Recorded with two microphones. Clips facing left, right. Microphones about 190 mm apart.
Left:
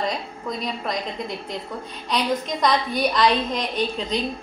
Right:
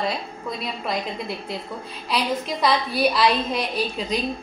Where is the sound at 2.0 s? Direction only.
5° right (ahead or behind).